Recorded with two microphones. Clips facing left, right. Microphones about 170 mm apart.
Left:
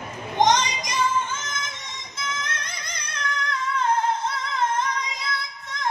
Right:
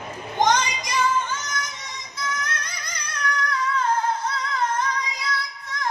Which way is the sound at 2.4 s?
20° left (ahead or behind).